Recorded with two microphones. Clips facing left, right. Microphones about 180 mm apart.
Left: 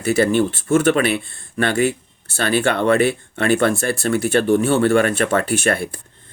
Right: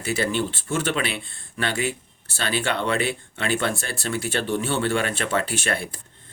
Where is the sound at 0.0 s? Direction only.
50° left (ahead or behind).